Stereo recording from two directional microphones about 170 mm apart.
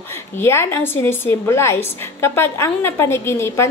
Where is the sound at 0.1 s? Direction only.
15° left (ahead or behind).